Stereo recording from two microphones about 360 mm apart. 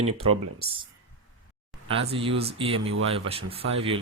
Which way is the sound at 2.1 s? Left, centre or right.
Centre.